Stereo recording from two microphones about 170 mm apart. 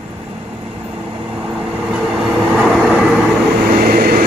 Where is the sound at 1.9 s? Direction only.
Centre (ahead or behind).